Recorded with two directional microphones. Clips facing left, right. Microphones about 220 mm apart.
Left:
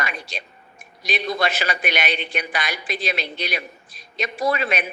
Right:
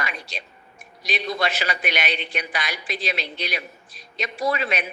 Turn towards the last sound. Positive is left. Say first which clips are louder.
# left 2 dB
turn(degrees=50)  # may be behind; listen again after turning